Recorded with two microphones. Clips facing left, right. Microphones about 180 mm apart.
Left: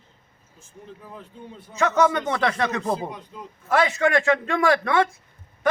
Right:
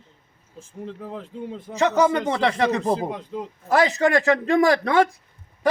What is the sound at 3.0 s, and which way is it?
Speech, 90° right.